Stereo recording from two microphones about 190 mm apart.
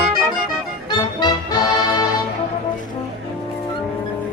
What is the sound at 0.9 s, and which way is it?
Music, 20° left (ahead or behind).